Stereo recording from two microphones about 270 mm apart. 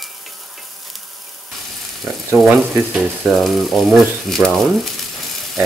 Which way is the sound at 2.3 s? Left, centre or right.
Centre.